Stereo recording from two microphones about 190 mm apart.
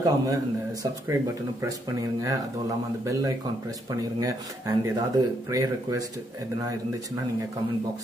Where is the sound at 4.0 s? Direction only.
20° right (ahead or behind).